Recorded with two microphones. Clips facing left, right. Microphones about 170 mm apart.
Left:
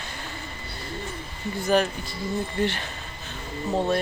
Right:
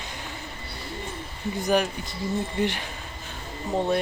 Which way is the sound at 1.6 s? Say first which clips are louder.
Left 2 dB; 15° right (ahead or behind).